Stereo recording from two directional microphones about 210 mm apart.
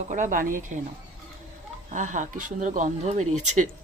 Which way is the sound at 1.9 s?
35° right (ahead or behind).